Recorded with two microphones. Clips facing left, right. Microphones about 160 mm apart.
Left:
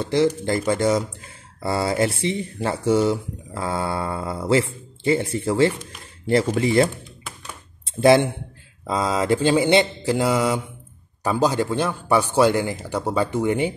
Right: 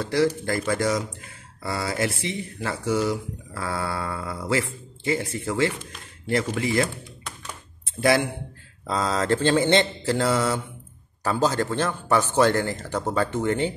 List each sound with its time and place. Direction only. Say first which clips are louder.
0.0 s speech: left 3 dB; 20° left (ahead or behind)
8.8 s speech: left 3 dB; 10° left (ahead or behind)